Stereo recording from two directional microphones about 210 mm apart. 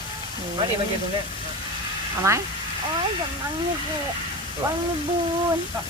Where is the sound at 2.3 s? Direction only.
15° right (ahead or behind).